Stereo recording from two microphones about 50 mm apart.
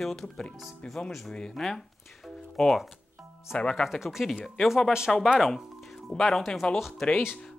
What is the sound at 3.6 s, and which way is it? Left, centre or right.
Speech, left.